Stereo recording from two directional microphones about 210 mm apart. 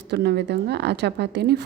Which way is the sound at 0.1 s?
50° right (ahead or behind).